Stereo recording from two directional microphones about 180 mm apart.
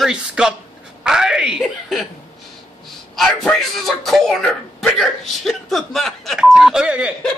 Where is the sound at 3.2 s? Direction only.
Centre (ahead or behind).